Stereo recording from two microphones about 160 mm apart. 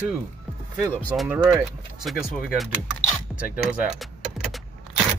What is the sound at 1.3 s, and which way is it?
Speech, 5° right (ahead or behind).